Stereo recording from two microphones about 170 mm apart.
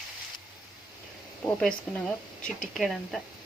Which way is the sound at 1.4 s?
5° left (ahead or behind).